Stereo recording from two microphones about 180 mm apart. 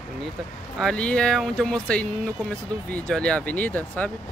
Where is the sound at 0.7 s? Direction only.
5° left (ahead or behind).